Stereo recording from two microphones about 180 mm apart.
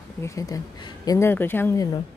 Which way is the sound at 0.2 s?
20° left (ahead or behind).